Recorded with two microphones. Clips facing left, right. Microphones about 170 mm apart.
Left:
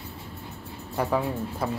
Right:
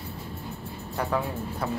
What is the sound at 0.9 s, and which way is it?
Speech, 10° left (ahead or behind).